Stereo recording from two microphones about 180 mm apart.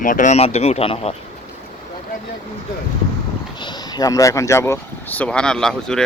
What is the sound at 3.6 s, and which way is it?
Speech, 25° left (ahead or behind).